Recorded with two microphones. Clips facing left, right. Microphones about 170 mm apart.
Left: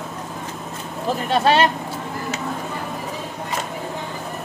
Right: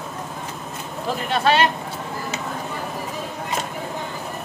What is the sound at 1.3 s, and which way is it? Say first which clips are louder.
Speech: left 2 dB; 35° left (ahead or behind).